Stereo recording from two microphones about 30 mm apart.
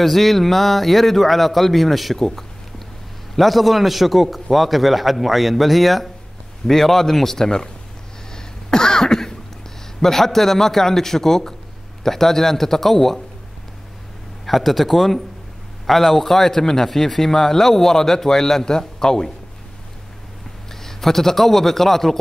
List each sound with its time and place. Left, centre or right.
0.0 s a man's voice: centre
3.3 s a man's voice: centre
6.7 s a man's voice: centre
8.4 s a sound: left
9.9 s a man's voice: centre
14.4 s a man's voice: centre; by 19.3 s left
20.8 s a man's voice: centre